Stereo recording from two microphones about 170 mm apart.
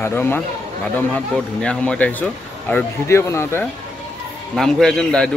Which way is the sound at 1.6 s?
5° left (ahead or behind).